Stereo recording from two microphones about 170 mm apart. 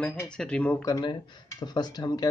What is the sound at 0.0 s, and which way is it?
Speech, 5° left (ahead or behind).